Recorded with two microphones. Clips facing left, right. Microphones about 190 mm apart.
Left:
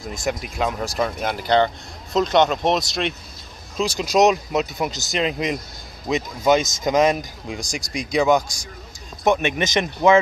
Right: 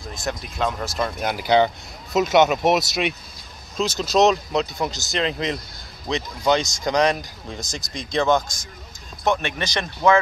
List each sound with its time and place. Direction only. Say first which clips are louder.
0.1 s speech: left 3 dB; 10° left (ahead or behind); by 3.2 s 5° right (ahead or behind)
3.7 s speech: left 1 dB; 10° left (ahead or behind)